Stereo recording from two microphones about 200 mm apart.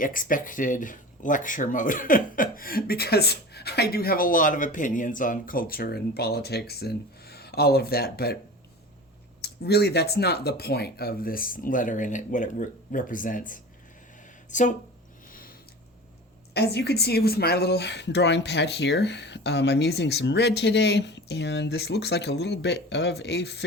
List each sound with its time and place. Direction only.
0.0 s speech: 45° left (ahead or behind)
9.4 s speech: 55° left (ahead or behind)
15.3 s a sound: 45° left (ahead or behind)
16.6 s speech: 55° left (ahead or behind)